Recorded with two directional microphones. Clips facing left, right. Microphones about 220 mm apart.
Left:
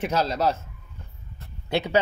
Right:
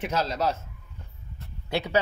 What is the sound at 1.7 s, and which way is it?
Speech, 20° left (ahead or behind).